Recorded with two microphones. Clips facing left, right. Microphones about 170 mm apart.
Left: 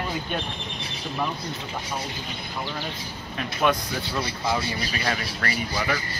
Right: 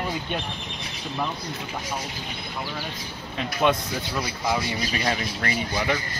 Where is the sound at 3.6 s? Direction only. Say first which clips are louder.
Right 1 dB; 20° right (ahead or behind).